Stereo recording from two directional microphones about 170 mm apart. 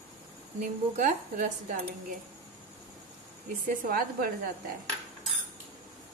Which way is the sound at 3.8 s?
55° right (ahead or behind).